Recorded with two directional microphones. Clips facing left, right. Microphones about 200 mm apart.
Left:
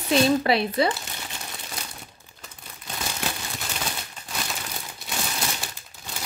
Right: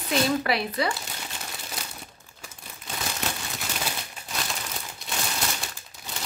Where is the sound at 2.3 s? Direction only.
20° left (ahead or behind).